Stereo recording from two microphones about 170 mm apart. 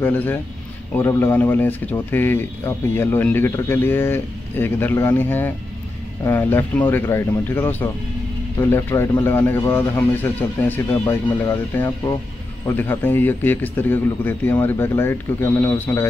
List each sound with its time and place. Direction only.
0.0 s speech: 10° left (ahead or behind)